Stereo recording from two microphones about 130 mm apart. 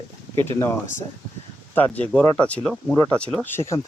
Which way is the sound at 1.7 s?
15° left (ahead or behind).